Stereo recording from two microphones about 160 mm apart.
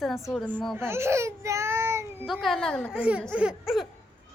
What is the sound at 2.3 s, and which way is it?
Speech, centre (ahead or behind).